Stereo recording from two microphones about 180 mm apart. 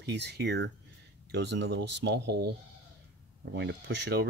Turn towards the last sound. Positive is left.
turn(degrees=-70)  # may be behind; listen again after turning